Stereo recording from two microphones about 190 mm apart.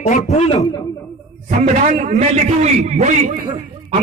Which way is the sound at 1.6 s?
35° right (ahead or behind).